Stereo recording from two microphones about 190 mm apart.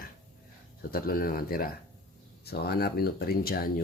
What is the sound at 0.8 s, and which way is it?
Speech, 50° left (ahead or behind).